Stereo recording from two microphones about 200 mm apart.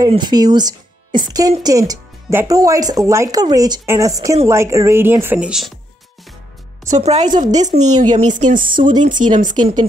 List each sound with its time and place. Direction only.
0.0 s speech: 20° right (ahead or behind); by 5.7 s 5° right (ahead or behind)
6.9 s speech: 35° right (ahead or behind)
8.5 s speech: 25° right (ahead or behind)
9.3 s speech: 40° right (ahead or behind)